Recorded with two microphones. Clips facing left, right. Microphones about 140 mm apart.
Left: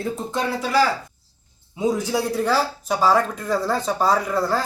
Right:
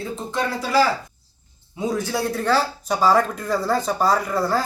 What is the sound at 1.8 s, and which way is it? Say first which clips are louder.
Speech: left 2 dB; 20° left (ahead or behind).